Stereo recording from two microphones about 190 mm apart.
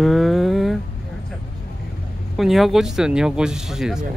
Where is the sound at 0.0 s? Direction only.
Centre (ahead or behind).